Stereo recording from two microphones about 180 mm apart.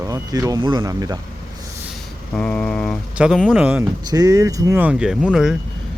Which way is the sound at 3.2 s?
5° right (ahead or behind).